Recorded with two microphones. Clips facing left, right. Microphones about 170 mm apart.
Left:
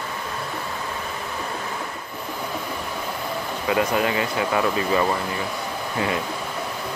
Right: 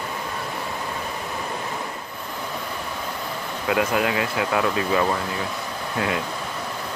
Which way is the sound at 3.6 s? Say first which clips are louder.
Even; centre (ahead or behind).